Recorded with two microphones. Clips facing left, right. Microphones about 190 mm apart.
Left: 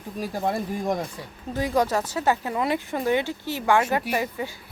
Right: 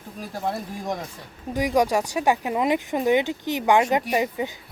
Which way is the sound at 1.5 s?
15° right (ahead or behind).